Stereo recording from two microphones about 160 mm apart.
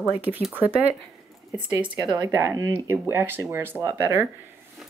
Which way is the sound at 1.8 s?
30° right (ahead or behind).